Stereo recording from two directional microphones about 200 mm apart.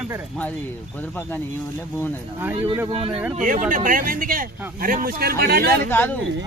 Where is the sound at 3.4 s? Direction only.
40° right (ahead or behind).